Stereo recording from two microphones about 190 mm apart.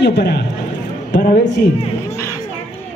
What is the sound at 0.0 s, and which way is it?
Speech, 60° left (ahead or behind).